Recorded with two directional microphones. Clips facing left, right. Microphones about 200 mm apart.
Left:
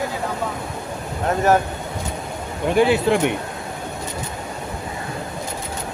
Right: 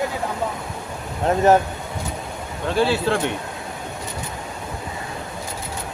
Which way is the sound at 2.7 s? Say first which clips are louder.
Left 3 dB; 15° left (ahead or behind).